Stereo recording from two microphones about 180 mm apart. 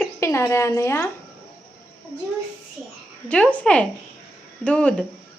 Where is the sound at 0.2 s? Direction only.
15° left (ahead or behind).